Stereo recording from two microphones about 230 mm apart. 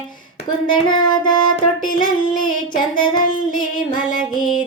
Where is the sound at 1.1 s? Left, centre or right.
Centre.